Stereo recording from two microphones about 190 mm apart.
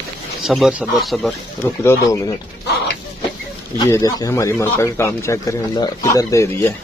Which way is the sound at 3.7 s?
20° left (ahead or behind).